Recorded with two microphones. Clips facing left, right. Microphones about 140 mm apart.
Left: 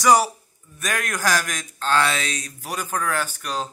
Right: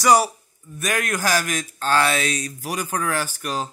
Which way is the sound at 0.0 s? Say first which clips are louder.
Even; 5° right (ahead or behind).